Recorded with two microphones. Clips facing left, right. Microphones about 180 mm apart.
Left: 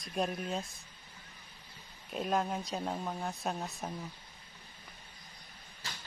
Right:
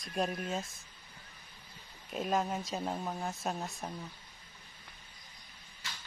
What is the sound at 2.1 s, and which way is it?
Speech, centre (ahead or behind).